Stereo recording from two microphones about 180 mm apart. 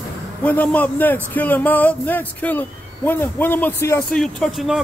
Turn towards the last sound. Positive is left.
turn(degrees=5)  # may be behind; listen again after turning